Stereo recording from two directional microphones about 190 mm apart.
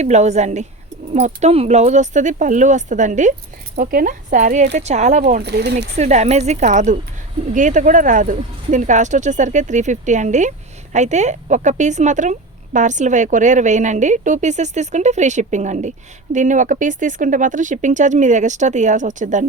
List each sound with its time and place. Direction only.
0.0 s a woman's voice: 35° right (ahead or behind)
5.4 s speech: 60° right (ahead or behind)
6.0 s a woman's voice: 35° right (ahead or behind)